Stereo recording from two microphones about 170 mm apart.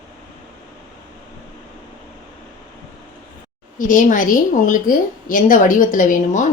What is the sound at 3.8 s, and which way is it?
A woman's voice, 50° left (ahead or behind).